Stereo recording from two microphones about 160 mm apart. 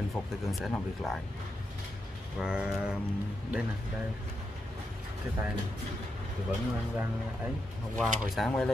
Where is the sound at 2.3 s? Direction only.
5° right (ahead or behind).